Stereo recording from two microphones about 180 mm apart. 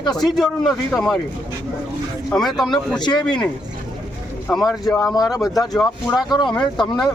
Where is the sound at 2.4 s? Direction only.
Centre (ahead or behind).